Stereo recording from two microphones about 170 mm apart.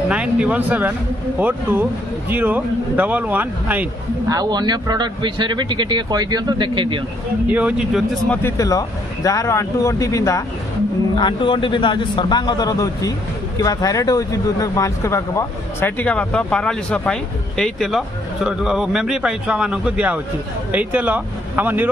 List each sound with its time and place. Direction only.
0.1 s speech: 5° right (ahead or behind)
4.3 s speech: 25° right (ahead or behind)
7.4 s speech: 10° right (ahead or behind)
8.3 s speech: 15° left (ahead or behind); by 21.8 s 10° right (ahead or behind)